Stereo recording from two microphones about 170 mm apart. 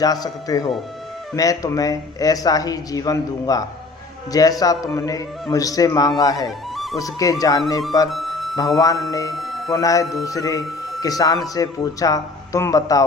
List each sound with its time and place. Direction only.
0.0 s speech: 20° left (ahead or behind)
8.1 s music: centre (ahead or behind)
8.5 s speech: 20° left (ahead or behind)
9.3 s a sound: centre (ahead or behind)
9.7 s speech: 20° left (ahead or behind)